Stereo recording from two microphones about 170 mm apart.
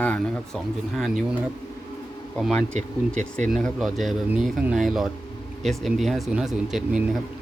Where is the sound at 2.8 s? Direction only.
45° right (ahead or behind).